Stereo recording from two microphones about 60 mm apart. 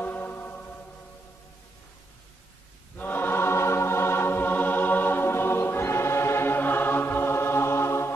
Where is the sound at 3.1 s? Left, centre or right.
Left.